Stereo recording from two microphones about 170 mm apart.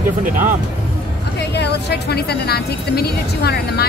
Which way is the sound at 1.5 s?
80° left.